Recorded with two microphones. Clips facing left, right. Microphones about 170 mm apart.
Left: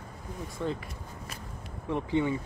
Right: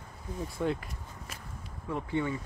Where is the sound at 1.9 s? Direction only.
20° left (ahead or behind).